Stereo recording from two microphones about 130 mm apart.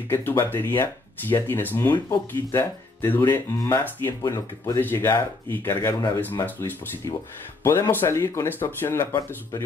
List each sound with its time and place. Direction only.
0.1 s speech: 20° left (ahead or behind)